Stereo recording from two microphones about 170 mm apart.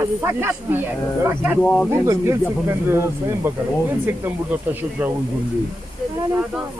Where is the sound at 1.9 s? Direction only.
15° right (ahead or behind).